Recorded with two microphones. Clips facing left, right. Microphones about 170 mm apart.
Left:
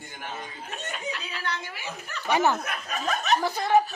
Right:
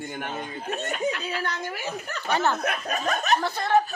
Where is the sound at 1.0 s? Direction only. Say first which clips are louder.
Right 7 dB; 50° right (ahead or behind).